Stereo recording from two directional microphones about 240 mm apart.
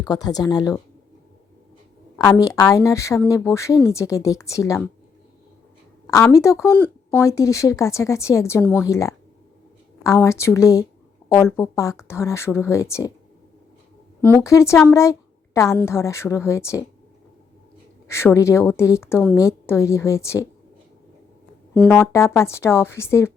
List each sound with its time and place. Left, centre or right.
0.0 s speech: centre
2.1 s speech: centre
6.1 s speech: centre
14.2 s speech: centre
18.1 s speech: centre
21.8 s speech: centre